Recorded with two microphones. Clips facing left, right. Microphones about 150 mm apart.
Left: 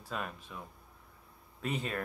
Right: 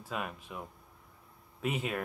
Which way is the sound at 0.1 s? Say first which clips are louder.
Right 1 dB; 10° right (ahead or behind).